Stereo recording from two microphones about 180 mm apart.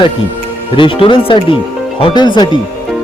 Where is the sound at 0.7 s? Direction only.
30° left (ahead or behind).